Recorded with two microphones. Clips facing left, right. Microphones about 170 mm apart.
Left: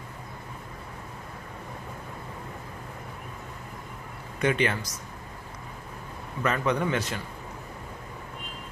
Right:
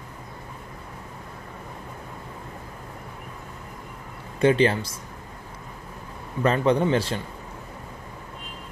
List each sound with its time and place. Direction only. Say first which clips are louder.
4.4 s a man's voice: right 6 dB; 30° right (ahead or behind)
6.4 s a man's voice: right 6 dB; 30° right (ahead or behind)